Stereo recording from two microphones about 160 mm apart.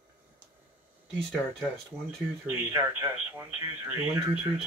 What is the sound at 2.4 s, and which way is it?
Speech, 15° right (ahead or behind).